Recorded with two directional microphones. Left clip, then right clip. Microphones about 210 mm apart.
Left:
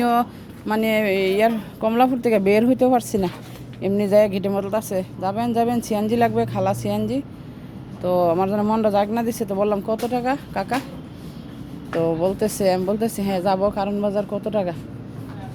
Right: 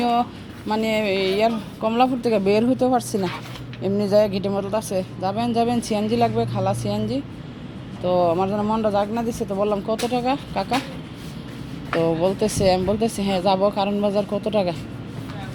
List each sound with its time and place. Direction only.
0.0 s speech: 20° left (ahead or behind)
11.9 s speech: 5° left (ahead or behind)